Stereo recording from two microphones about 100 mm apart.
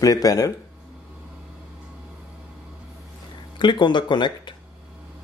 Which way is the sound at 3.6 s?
50° left (ahead or behind).